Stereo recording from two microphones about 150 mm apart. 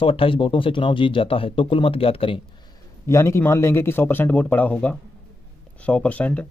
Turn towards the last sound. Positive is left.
turn(degrees=10)  # may be behind; listen again after turning